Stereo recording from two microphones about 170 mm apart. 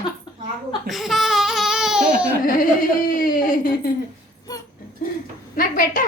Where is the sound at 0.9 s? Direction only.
Centre (ahead or behind).